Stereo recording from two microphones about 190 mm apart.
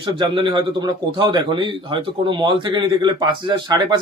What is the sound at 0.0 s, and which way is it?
A man's voice, 25° right (ahead or behind).